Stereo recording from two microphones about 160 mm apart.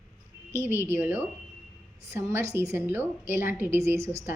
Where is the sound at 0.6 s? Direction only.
10° right (ahead or behind).